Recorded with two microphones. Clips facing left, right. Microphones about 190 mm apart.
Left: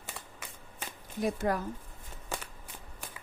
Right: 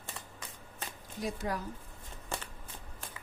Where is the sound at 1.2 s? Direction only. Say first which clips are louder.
Left 6 dB; 55° left (ahead or behind).